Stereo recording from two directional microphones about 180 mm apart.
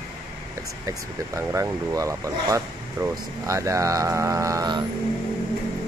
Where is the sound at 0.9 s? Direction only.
20° right (ahead or behind).